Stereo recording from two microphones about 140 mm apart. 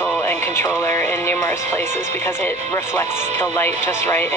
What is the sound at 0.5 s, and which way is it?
Speech, 20° left (ahead or behind).